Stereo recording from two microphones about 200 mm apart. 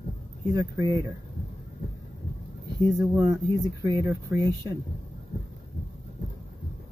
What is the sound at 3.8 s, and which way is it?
Speech, 20° right (ahead or behind).